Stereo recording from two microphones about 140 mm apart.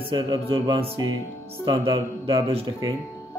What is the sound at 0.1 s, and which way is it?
Speech, 35° right (ahead or behind).